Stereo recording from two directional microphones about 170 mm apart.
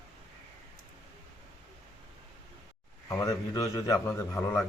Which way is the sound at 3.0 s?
20° left (ahead or behind).